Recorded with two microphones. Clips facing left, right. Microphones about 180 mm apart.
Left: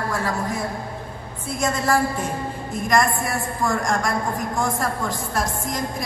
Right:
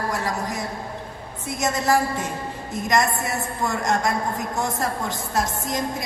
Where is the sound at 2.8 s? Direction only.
20° right (ahead or behind).